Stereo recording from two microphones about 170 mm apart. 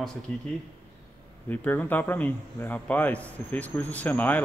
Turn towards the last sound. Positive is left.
turn(degrees=10)  # may be behind; listen again after turning